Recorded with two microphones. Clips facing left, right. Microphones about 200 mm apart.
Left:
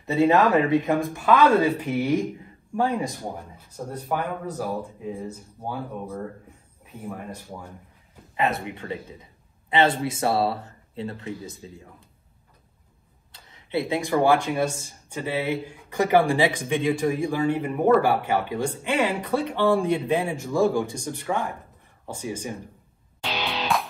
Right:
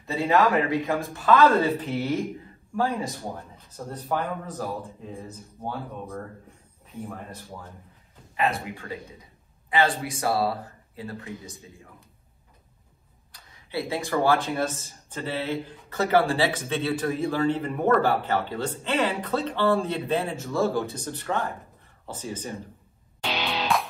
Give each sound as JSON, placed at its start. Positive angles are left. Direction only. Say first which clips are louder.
{"t": 0.0, "sound": "speech", "louder": "left 3 dB", "side_deg": 20}
{"t": 7.2, "sound": "speech", "louder": "left 3 dB", "side_deg": 15}
{"t": 8.6, "sound": "a man's voice", "louder": "left 3 dB", "side_deg": 25}
{"t": 13.3, "sound": "speech", "louder": "left 6 dB", "side_deg": 20}